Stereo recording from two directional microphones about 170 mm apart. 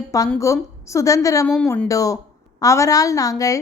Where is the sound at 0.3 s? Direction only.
20° left (ahead or behind).